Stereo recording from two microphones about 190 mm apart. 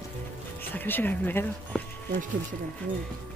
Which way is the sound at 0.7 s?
10° left (ahead or behind).